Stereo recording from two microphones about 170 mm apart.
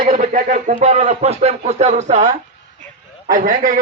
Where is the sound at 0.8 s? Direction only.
35° right (ahead or behind).